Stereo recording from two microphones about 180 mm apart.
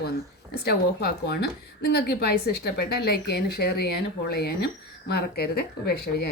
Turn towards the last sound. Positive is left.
turn(degrees=60)  # may be behind; listen again after turning